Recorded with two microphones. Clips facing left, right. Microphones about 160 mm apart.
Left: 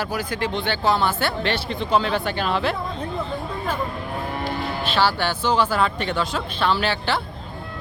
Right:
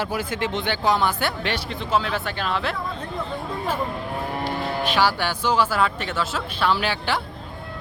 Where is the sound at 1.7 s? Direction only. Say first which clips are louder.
Left 3 dB; 5° right (ahead or behind).